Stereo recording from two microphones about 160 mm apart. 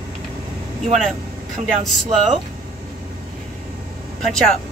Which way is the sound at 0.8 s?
45° right (ahead or behind).